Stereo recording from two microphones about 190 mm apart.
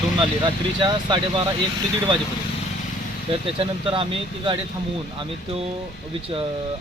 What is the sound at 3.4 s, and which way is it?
Speech, 30° right (ahead or behind).